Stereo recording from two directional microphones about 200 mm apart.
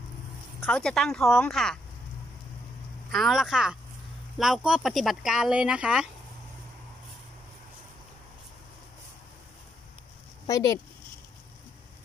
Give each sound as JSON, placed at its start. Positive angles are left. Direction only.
{"t": 0.6, "sound": "speech", "side_deg": 5}
{"t": 3.1, "sound": "speech", "side_deg": 0}
{"t": 10.4, "sound": "speech", "side_deg": 15}